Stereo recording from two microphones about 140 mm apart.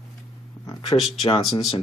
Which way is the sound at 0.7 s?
35° left (ahead or behind).